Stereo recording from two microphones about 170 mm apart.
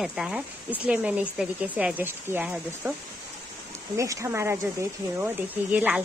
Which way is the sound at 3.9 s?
20° right (ahead or behind).